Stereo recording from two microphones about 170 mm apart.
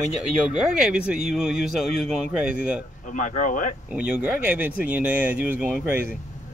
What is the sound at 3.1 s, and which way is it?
Speech, 50° left (ahead or behind).